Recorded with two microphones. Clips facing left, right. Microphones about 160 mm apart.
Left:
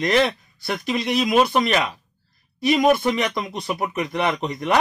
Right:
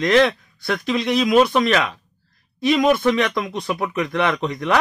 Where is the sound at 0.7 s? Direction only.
20° left (ahead or behind).